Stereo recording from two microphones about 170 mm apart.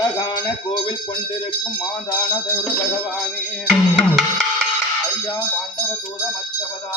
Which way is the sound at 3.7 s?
Centre (ahead or behind).